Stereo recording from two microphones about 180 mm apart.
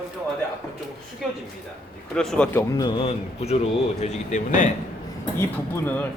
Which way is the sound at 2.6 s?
25° left (ahead or behind).